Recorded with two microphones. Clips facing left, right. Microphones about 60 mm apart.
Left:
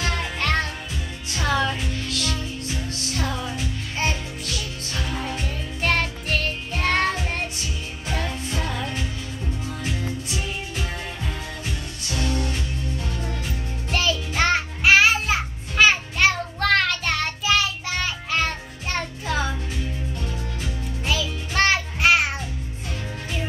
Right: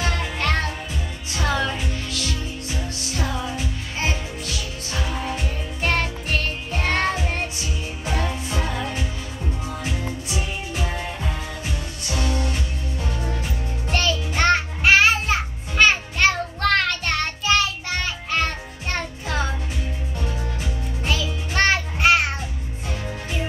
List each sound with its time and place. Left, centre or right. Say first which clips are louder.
0.0 s music: right 1 dB; centre
13.8 s music: right 1 dB; centre
21.0 s music: even; centre